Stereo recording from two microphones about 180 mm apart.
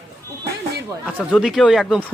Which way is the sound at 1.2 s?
Centre (ahead or behind).